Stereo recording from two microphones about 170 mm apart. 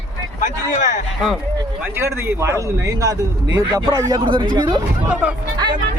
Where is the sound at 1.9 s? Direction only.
15° right (ahead or behind).